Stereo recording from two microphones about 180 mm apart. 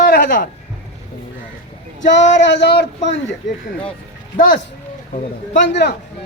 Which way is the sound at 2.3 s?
80° left.